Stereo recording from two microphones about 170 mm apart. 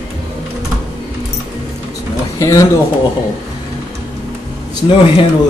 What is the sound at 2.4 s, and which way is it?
Speech, 20° left (ahead or behind).